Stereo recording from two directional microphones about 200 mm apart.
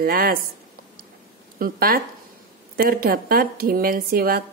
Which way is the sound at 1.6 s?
45° right (ahead or behind).